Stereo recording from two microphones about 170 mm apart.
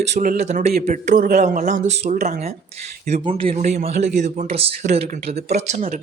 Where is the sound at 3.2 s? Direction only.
35° right (ahead or behind).